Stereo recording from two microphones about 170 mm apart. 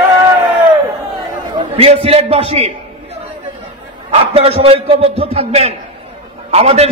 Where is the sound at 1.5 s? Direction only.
35° right (ahead or behind).